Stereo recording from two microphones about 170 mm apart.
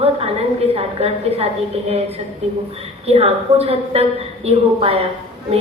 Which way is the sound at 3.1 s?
35° right (ahead or behind).